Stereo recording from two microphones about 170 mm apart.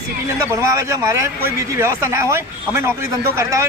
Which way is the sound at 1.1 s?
15° right (ahead or behind).